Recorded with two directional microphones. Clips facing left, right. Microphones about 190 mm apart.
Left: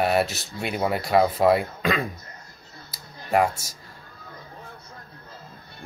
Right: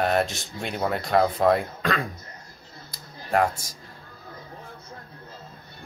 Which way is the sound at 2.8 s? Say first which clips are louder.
Left 2 dB; 5° left (ahead or behind).